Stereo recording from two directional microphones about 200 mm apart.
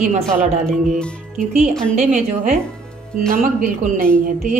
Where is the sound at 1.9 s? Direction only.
35° right (ahead or behind).